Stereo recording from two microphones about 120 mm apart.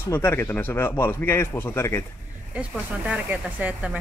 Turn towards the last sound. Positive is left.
turn(degrees=-15)  # may be behind; listen again after turning